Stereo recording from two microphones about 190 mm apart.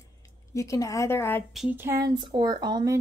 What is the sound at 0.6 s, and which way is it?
Speech, 15° left (ahead or behind).